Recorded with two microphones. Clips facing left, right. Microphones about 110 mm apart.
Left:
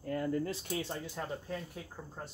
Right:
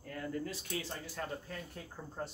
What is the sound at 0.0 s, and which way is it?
Speech, 30° left (ahead or behind).